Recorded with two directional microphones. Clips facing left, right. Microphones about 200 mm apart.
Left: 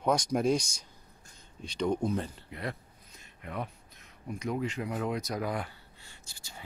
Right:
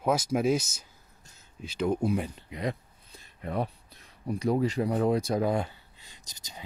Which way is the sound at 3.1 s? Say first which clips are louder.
Right 7 dB; 35° right (ahead or behind).